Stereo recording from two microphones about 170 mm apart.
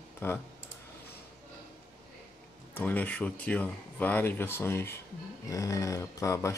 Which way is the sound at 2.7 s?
10° left (ahead or behind).